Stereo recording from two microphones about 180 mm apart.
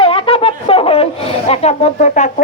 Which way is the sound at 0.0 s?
30° left (ahead or behind).